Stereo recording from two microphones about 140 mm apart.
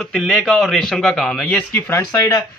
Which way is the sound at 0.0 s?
Centre (ahead or behind).